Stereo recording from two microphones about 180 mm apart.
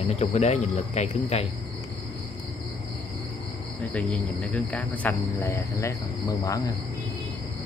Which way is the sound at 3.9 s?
5° left (ahead or behind).